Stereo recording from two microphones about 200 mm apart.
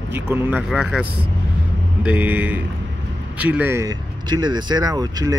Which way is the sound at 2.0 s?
10° right (ahead or behind).